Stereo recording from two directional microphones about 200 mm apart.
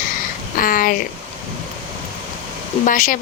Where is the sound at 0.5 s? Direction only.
45° left (ahead or behind).